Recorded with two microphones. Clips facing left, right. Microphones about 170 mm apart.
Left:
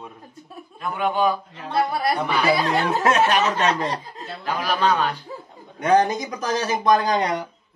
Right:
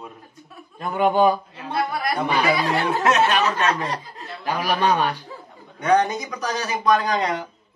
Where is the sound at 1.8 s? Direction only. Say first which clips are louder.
Left 3 dB; 35° left (ahead or behind).